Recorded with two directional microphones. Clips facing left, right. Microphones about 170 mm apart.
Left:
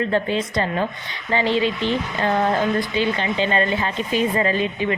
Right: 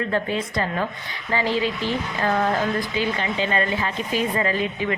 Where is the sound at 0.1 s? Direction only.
25° left (ahead or behind).